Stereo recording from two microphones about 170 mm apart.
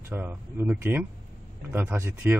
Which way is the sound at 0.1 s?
10° right (ahead or behind).